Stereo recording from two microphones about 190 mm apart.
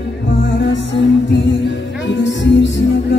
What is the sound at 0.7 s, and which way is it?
Music, 70° left (ahead or behind).